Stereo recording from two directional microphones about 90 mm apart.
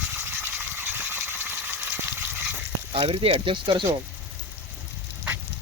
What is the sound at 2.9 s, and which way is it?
Speech, 80° right.